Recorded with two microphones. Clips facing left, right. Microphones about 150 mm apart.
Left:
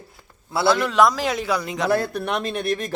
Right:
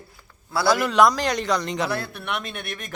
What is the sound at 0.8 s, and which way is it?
A man's voice, centre (ahead or behind).